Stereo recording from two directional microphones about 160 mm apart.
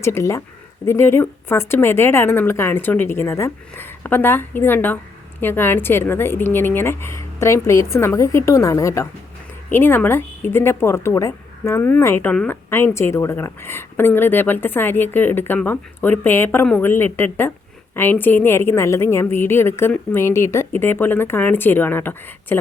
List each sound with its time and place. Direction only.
0.0 s speech: 15° left (ahead or behind)